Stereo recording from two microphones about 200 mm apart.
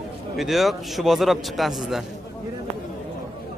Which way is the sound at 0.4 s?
Centre (ahead or behind).